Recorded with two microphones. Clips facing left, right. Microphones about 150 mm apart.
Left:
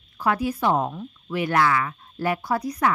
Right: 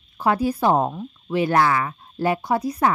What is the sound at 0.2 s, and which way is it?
A woman's voice, 30° right (ahead or behind).